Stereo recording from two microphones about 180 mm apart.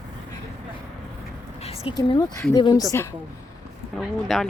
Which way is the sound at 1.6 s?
35° left (ahead or behind).